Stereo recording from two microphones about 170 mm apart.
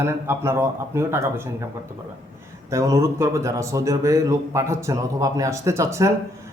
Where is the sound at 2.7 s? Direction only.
20° right (ahead or behind).